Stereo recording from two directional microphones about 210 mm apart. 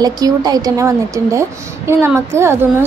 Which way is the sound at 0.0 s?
20° right (ahead or behind).